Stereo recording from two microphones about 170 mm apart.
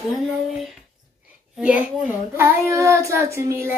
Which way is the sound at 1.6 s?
10° right (ahead or behind).